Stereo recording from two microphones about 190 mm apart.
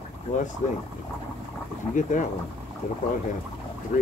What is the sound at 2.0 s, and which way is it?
Speech, 40° left (ahead or behind).